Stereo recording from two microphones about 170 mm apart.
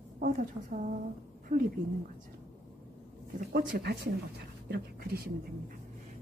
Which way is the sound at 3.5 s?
65° right (ahead or behind).